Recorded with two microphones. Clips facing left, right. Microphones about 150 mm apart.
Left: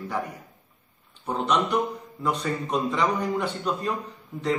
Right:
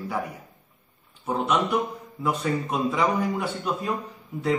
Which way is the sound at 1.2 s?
5° right (ahead or behind).